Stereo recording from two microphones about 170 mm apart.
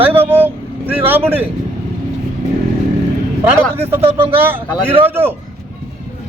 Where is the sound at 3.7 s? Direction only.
15° right (ahead or behind).